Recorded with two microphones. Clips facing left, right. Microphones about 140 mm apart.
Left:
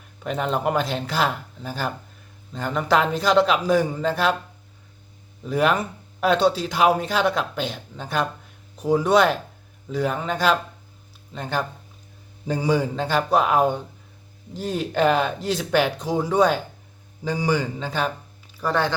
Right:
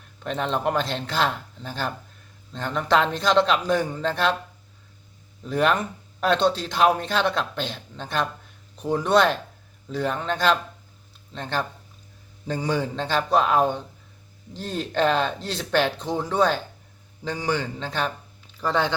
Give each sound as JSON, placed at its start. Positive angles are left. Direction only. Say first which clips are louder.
{"t": 0.2, "sound": "a man's voice", "louder": "left 2 dB", "side_deg": 5}
{"t": 5.5, "sound": "a man's voice", "louder": "left 1 dB", "side_deg": 5}
{"t": 18.7, "sound": "speech", "louder": "left 1 dB", "side_deg": -20}